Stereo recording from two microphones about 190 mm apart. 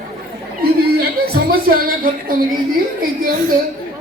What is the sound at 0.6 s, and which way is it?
Chatter, 55° right (ahead or behind).